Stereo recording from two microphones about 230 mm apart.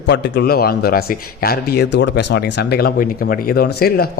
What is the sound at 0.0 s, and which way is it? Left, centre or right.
A man's voice, left.